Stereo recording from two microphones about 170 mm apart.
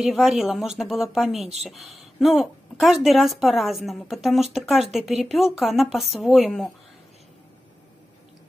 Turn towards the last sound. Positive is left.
turn(degrees=0)  # may be behind; listen again after turning